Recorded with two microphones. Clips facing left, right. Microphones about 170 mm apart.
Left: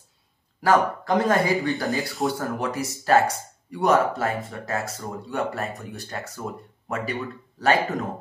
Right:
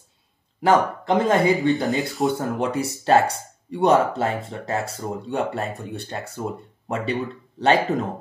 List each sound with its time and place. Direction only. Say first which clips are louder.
0.6 s speech: right 2 dB; 25° right (ahead or behind)
2.0 s speech: right 3 dB; centre (ahead or behind)
2.3 s speech: right 4 dB; 25° right (ahead or behind)